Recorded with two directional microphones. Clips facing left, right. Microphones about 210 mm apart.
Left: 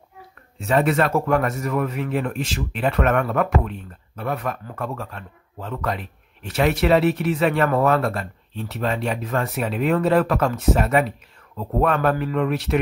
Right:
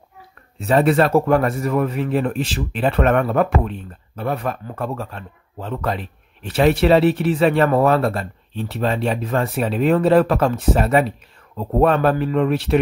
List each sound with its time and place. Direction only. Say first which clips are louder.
0.6 s speech: right 4 dB; 35° right (ahead or behind)